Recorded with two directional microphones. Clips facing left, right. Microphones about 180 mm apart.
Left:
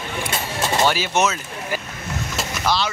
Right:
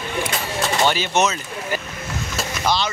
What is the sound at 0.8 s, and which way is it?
Speech, 5° left (ahead or behind).